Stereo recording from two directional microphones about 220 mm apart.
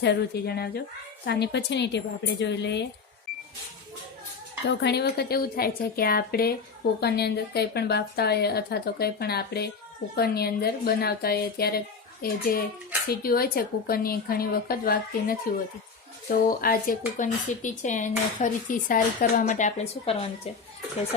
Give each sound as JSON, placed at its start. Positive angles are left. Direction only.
{"t": 0.0, "sound": "speech", "side_deg": 50}
{"t": 4.7, "sound": "speech", "side_deg": 50}